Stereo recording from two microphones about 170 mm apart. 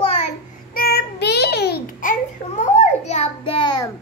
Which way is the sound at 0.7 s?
60° left (ahead or behind).